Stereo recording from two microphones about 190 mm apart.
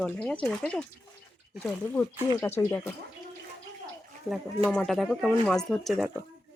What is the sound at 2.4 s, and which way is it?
Speech, 15° left (ahead or behind).